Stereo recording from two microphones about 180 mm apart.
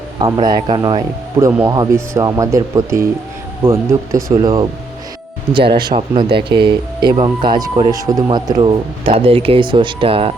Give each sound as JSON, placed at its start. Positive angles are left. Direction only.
{"t": 0.2, "sound": "speech", "side_deg": -20}
{"t": 5.7, "sound": "speech", "side_deg": -30}